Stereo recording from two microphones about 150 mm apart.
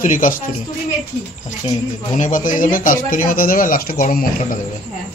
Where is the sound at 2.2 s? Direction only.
60° left (ahead or behind).